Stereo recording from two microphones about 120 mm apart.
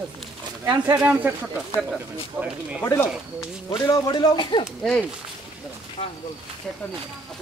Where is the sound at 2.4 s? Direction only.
10° right (ahead or behind).